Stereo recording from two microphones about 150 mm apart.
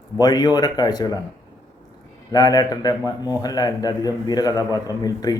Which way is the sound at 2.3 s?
25° left (ahead or behind).